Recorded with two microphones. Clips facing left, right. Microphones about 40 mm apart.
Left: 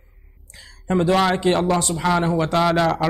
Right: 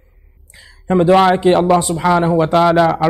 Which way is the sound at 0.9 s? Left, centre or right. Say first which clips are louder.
Right 7 dB; right.